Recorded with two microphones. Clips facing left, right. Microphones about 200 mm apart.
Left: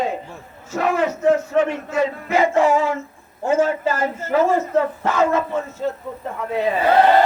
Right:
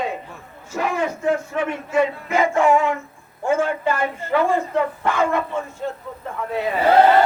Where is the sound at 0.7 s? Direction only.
65° left (ahead or behind).